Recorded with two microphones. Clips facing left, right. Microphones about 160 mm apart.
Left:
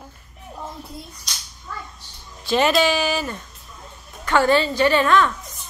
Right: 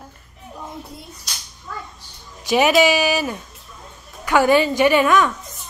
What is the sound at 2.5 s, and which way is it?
A woman's voice, 10° right (ahead or behind).